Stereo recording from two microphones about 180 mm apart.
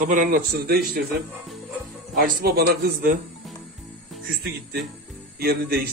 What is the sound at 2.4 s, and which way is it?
Speech, 60° right (ahead or behind).